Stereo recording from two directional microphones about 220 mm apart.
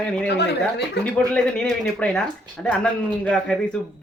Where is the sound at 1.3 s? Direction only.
5° left (ahead or behind).